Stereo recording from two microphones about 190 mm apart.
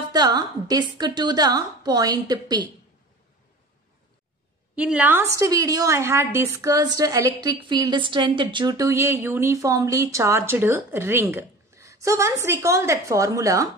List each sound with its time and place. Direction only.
0.1 s a woman's voice: 20° right (ahead or behind)
4.7 s a woman's voice: 5° right (ahead or behind)